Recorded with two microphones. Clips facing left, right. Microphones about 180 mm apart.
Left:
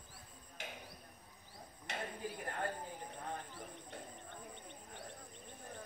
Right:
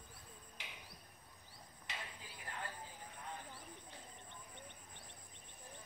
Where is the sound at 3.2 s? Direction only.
55° left (ahead or behind).